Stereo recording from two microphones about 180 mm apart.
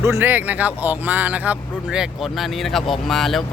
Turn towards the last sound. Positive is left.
turn(degrees=0)  # may be behind; listen again after turning